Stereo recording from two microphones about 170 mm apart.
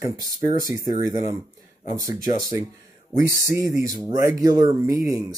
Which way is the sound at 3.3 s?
15° right (ahead or behind).